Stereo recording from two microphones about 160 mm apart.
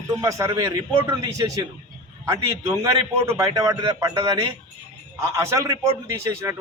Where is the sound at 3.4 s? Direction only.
20° right (ahead or behind).